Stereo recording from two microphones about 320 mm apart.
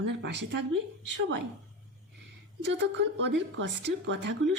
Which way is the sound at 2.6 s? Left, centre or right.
Right.